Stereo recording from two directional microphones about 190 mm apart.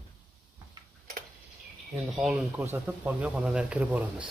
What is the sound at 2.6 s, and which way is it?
Speech, 15° right (ahead or behind).